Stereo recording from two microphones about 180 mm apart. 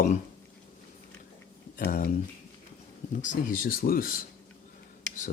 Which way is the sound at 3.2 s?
50° left (ahead or behind).